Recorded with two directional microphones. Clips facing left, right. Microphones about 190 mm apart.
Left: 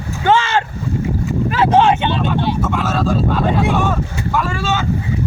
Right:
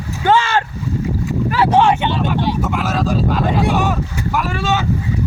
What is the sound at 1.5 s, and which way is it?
Speech, 20° left (ahead or behind).